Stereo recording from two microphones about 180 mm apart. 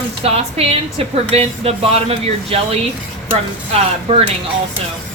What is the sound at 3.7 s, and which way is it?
Speech, 35° right (ahead or behind).